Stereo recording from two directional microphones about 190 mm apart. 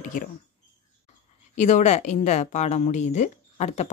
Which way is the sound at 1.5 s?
40° left (ahead or behind).